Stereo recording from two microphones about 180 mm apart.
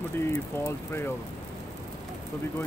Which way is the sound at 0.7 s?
15° left (ahead or behind).